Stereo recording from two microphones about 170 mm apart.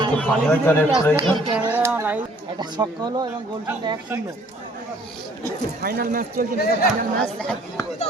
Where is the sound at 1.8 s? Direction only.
15° right (ahead or behind).